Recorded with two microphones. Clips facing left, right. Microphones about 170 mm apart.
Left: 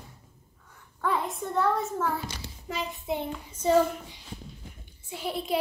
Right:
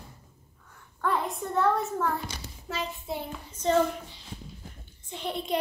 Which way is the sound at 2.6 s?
15° left (ahead or behind).